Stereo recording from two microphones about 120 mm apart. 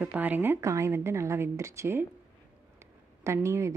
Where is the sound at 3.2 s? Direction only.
25° right (ahead or behind).